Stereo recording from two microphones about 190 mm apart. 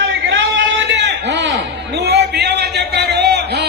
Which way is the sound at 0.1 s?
80° right.